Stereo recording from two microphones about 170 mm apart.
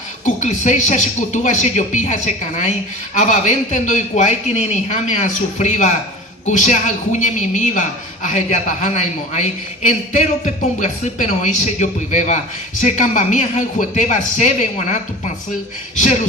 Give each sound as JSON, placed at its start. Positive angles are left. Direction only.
{"t": 0.4, "sound": "a woman's voice", "side_deg": 45}